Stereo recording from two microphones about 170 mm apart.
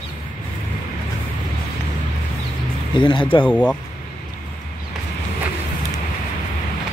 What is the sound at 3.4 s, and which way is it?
Speech, 10° left (ahead or behind).